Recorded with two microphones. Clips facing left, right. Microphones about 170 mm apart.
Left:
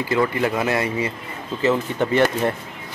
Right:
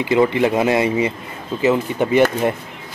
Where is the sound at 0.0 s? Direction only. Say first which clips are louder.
Right 5 dB; 20° right (ahead or behind).